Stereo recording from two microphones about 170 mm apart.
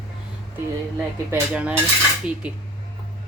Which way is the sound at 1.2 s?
10° right (ahead or behind).